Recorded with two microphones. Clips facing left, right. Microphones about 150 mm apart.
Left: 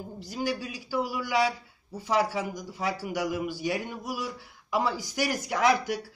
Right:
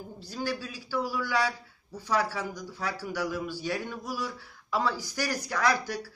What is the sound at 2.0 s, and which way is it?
A man's voice, 20° left (ahead or behind).